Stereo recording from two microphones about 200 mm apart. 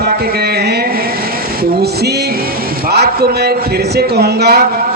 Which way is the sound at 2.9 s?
55° right (ahead or behind).